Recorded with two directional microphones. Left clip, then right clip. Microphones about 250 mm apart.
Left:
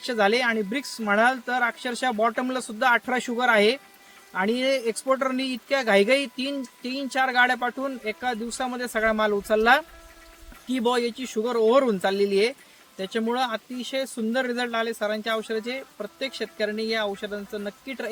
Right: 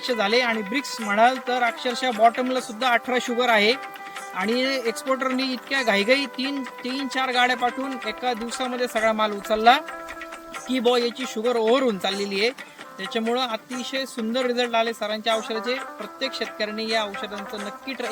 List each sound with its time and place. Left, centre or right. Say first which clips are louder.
0.0 s speech: right 1 dB; centre